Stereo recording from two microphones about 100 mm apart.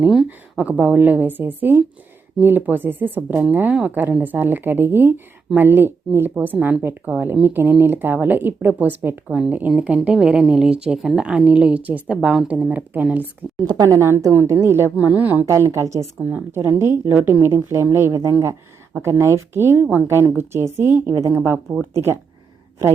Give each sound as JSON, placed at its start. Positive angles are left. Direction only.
{"t": 0.5, "sound": "a woman's voice", "side_deg": -15}
{"t": 12.1, "sound": "a woman's voice", "side_deg": -5}
{"t": 13.7, "sound": "a woman's voice", "side_deg": -35}
{"t": 15.4, "sound": "speech", "side_deg": -30}